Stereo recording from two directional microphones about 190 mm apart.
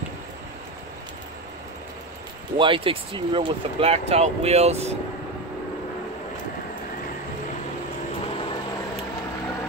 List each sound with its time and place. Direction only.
2.5 s speech: 25° right (ahead or behind)